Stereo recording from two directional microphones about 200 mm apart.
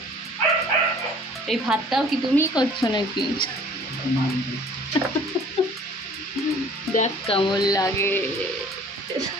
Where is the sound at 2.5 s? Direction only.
20° left (ahead or behind).